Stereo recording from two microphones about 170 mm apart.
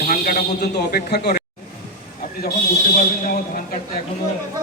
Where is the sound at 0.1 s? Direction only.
55° left (ahead or behind); by 1.4 s 70° left (ahead or behind).